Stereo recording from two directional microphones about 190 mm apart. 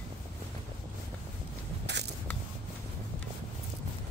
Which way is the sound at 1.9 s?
65° right (ahead or behind).